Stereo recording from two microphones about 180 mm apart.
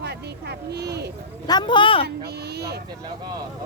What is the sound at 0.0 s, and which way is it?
Speech, 65° right (ahead or behind).